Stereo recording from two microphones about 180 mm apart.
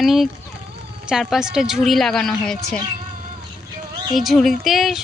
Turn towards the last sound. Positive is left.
turn(degrees=0)  # may be behind; listen again after turning